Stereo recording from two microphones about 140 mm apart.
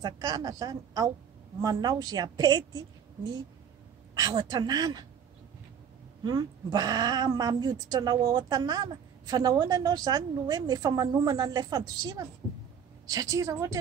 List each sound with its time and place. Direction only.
0.0 s speech: 30° right (ahead or behind)
4.1 s speech: 30° right (ahead or behind)
6.2 s speech: 30° right (ahead or behind)